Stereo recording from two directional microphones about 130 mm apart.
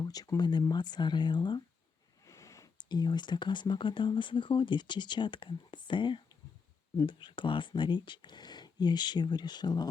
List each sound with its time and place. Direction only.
0.0 s speech: 30° left (ahead or behind)
2.2 s a sound: 25° left (ahead or behind)
2.7 s speech: 35° left (ahead or behind)